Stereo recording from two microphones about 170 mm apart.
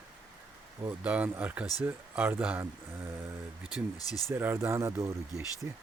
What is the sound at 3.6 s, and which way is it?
Speech, 20° left (ahead or behind).